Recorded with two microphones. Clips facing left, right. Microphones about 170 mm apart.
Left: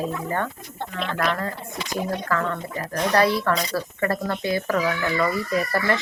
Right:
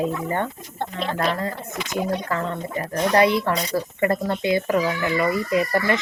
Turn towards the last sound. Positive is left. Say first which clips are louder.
# right 2 dB
turn(degrees=-15)  # may be behind; listen again after turning